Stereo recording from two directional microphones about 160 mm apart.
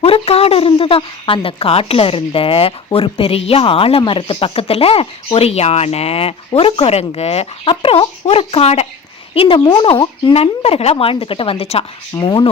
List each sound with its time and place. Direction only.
0.0 s a sound: 40° left (ahead or behind)
0.8 s a woman's voice: 35° left (ahead or behind)
12.1 s speech: 25° left (ahead or behind)